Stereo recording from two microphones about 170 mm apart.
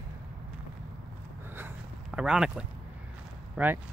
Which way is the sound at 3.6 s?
10° right (ahead or behind).